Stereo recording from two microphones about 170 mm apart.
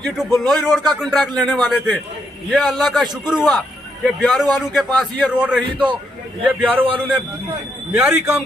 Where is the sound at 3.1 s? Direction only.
25° right (ahead or behind).